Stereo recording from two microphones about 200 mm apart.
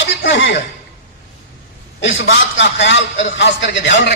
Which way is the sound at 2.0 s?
65° left (ahead or behind).